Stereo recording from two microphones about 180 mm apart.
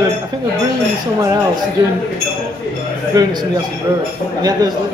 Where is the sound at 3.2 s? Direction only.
20° right (ahead or behind).